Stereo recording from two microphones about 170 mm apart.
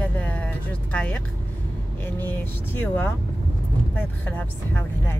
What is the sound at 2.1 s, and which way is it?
Speech, 10° left (ahead or behind).